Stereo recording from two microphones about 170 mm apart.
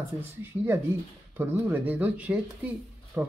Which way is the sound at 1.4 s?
10° right (ahead or behind).